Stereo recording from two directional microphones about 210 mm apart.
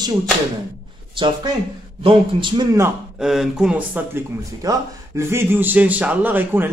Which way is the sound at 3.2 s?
Centre (ahead or behind).